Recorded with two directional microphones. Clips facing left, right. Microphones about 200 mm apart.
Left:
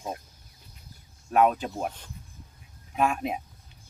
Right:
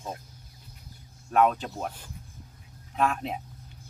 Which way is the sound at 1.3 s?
10° left (ahead or behind).